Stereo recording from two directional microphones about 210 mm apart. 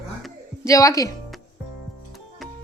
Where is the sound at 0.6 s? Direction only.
15° left (ahead or behind).